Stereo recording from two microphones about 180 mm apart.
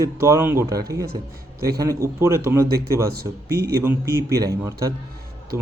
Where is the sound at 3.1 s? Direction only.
60° right (ahead or behind).